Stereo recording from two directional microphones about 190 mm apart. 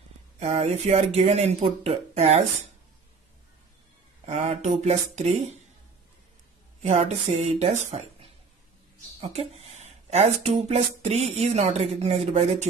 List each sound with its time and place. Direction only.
0.4 s speech: 35° right (ahead or behind)
4.3 s speech: 35° right (ahead or behind)
6.8 s speech: 35° right (ahead or behind)